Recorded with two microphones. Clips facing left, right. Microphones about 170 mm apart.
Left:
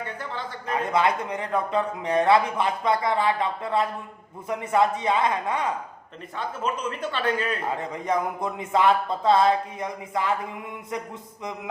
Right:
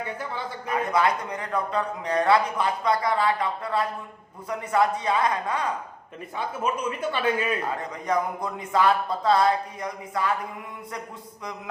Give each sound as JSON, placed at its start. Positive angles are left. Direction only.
{"t": 0.0, "sound": "speech", "side_deg": -10}
{"t": 0.9, "sound": "speech", "side_deg": 25}
{"t": 6.3, "sound": "a man's voice", "side_deg": -10}
{"t": 7.8, "sound": "speech", "side_deg": 25}